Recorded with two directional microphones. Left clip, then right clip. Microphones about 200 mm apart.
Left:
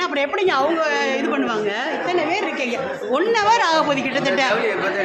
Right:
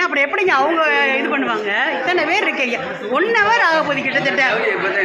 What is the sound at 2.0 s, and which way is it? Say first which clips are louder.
A woman's voice: right 4 dB; 5° right (ahead or behind).